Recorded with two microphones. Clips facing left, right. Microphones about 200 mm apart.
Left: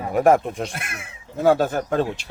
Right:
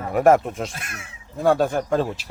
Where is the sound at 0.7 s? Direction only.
55° left (ahead or behind).